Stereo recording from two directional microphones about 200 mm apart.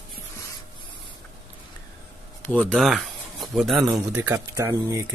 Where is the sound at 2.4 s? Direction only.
5° left (ahead or behind).